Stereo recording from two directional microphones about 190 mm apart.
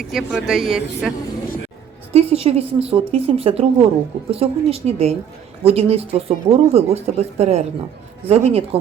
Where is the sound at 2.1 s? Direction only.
30° right (ahead or behind).